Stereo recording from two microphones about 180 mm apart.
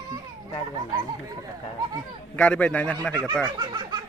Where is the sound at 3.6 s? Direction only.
25° right (ahead or behind).